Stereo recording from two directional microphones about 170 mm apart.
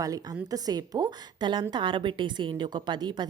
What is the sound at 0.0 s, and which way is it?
A woman's voice, 20° right (ahead or behind).